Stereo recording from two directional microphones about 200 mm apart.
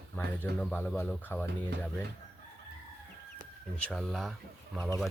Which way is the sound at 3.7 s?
5° left (ahead or behind).